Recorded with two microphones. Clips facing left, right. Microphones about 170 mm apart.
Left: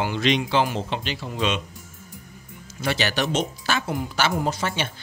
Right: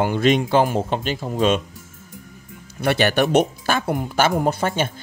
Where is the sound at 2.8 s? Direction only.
55° right (ahead or behind).